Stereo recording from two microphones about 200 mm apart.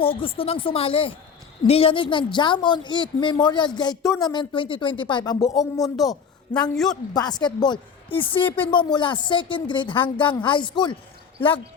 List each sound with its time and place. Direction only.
0.0 s a woman's voice: 25° left (ahead or behind)
5.8 s a man's voice: centre (ahead or behind)
7.1 s a woman's voice: 20° left (ahead or behind)
8.4 s speech: 10° left (ahead or behind)
8.6 s a woman's voice: 25° left (ahead or behind)